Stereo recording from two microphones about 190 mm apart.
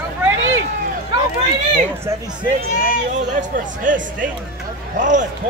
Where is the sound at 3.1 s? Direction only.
40° right (ahead or behind).